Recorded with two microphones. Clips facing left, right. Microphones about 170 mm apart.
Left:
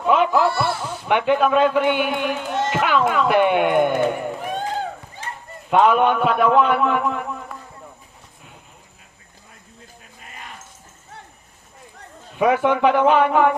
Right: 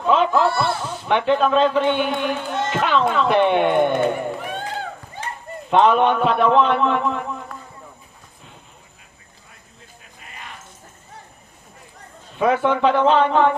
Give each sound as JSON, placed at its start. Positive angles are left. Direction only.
{"t": 0.0, "sound": "a sound", "side_deg": 10}
{"t": 0.6, "sound": "speech", "side_deg": 10}
{"t": 5.7, "sound": "a man's voice", "side_deg": 5}
{"t": 12.4, "sound": "speech", "side_deg": 15}